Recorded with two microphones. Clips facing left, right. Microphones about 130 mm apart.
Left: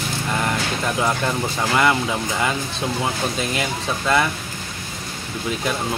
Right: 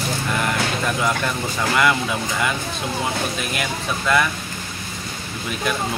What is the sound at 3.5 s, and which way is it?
Speech, 25° left (ahead or behind).